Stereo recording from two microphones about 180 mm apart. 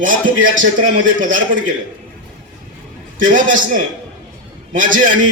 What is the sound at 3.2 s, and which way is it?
Speech, 45° right (ahead or behind).